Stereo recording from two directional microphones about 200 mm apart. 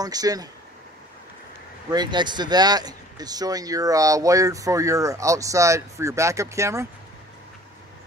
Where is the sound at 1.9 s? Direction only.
20° right (ahead or behind).